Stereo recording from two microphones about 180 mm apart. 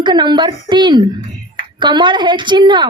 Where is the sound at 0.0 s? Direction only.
25° right (ahead or behind).